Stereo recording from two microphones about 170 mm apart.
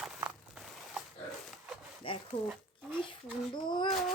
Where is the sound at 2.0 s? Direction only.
30° left (ahead or behind).